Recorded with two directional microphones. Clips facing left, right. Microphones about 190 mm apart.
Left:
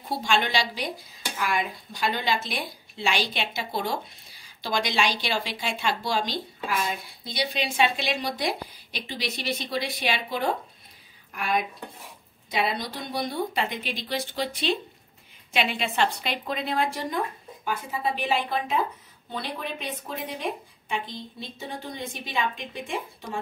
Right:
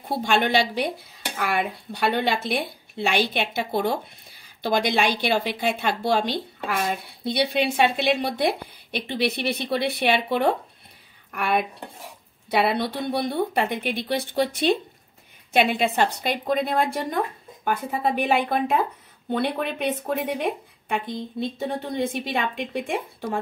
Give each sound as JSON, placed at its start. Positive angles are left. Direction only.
{"t": 0.1, "sound": "a woman's voice", "side_deg": -55}